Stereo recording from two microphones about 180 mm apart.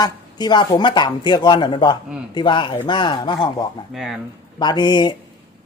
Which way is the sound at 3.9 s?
Centre (ahead or behind).